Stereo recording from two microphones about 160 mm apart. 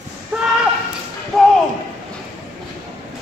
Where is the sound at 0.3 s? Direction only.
15° right (ahead or behind).